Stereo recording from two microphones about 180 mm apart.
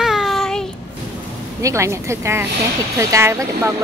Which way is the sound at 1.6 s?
15° right (ahead or behind).